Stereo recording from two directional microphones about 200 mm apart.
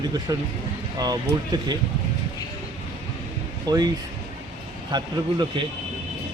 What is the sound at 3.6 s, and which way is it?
Speech, 20° right (ahead or behind).